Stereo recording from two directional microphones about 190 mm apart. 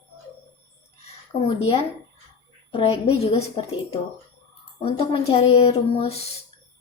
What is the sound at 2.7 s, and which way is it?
Speech, 30° left (ahead or behind).